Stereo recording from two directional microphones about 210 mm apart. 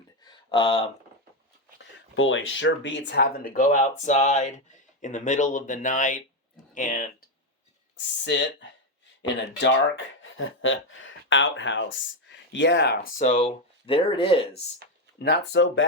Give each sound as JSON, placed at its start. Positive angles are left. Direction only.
{"t": 0.3, "sound": "a sound", "side_deg": 25}
{"t": 1.8, "sound": "speech", "side_deg": 65}
{"t": 7.9, "sound": "speech", "side_deg": 60}
{"t": 15.2, "sound": "speech", "side_deg": 55}